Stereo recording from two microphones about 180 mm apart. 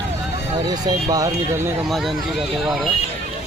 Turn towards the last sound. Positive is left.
turn(degrees=0)  # may be behind; listen again after turning